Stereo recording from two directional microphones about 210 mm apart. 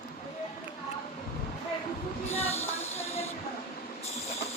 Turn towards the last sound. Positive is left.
turn(degrees=30)  # may be behind; listen again after turning